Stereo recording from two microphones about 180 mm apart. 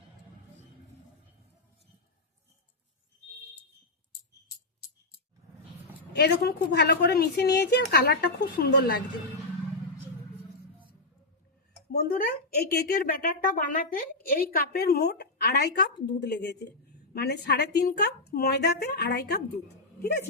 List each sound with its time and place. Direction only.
6.1 s a woman's voice: 65° left (ahead or behind)
11.9 s a woman's voice: 60° left (ahead or behind)